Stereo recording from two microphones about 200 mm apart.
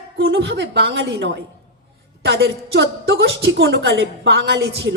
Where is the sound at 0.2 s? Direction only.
60° right (ahead or behind).